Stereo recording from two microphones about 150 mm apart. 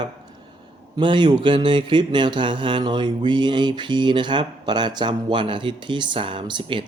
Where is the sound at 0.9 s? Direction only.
30° right (ahead or behind).